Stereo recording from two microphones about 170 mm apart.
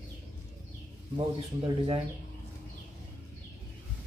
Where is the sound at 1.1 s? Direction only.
20° right (ahead or behind).